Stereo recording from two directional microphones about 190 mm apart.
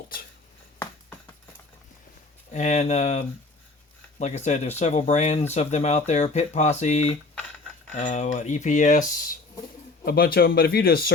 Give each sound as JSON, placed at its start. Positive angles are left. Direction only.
{"t": 2.5, "sound": "speech", "side_deg": 40}